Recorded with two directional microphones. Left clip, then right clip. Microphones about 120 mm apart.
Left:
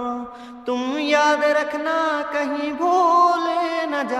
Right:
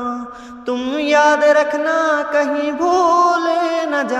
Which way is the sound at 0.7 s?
15° right (ahead or behind).